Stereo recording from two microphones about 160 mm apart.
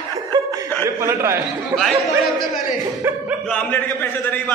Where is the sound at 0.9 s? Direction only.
15° right (ahead or behind).